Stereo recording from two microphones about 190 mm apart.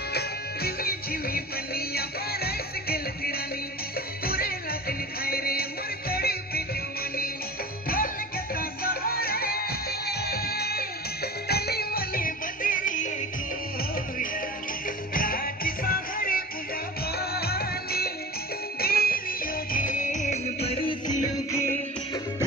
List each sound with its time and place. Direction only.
0.1 s music: 55° left (ahead or behind)
8.5 s music: 50° left (ahead or behind)
15.1 s music: 50° left (ahead or behind)
21.5 s music: 15° left (ahead or behind)